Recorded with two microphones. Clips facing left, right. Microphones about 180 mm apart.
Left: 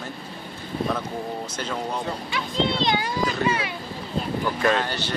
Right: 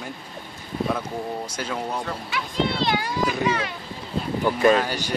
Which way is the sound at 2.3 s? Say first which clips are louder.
Even; 20° left (ahead or behind).